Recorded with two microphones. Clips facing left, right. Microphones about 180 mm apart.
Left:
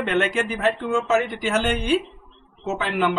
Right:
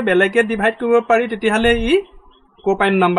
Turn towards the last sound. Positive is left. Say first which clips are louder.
# right 9 dB
turn(degrees=-65)  # may be behind; listen again after turning